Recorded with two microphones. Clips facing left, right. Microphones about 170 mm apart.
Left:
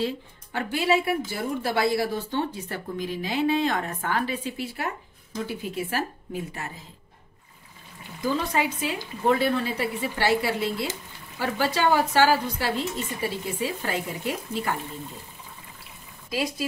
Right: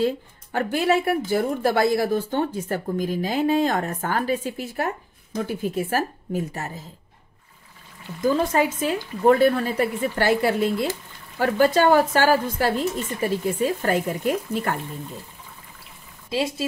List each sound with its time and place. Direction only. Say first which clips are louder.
0.0 s speech: right 5 dB; 50° right (ahead or behind)
8.4 s speech: right 5 dB; 45° right (ahead or behind)
16.3 s speech: right 3 dB; 25° right (ahead or behind)